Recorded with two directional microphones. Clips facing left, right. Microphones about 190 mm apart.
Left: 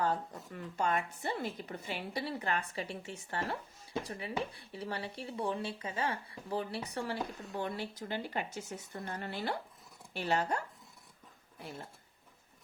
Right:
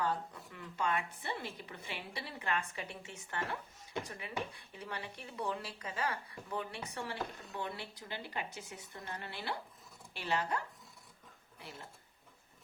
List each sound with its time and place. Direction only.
0.0 s speech: 45° left (ahead or behind)